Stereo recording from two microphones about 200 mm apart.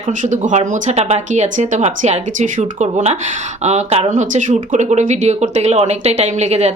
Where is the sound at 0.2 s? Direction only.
40° right (ahead or behind).